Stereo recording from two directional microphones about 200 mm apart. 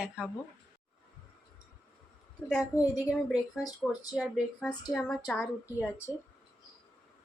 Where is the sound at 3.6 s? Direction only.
20° left (ahead or behind).